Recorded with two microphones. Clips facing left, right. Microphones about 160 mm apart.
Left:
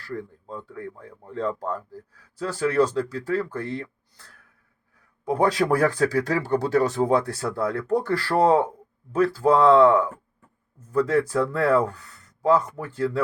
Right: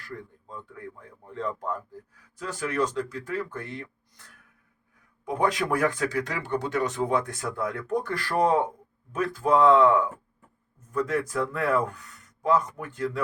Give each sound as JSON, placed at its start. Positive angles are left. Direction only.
{"t": 0.0, "sound": "speech", "side_deg": 30}